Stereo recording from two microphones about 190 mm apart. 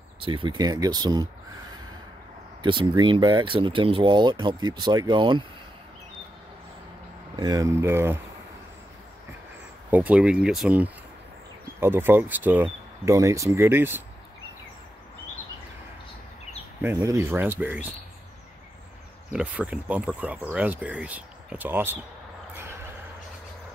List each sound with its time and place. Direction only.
0.2 s speech: 25° right (ahead or behind)
7.3 s speech: 20° right (ahead or behind)
9.8 s speech: 10° right (ahead or behind)
16.8 s speech: 15° right (ahead or behind)
19.3 s speech: 5° right (ahead or behind)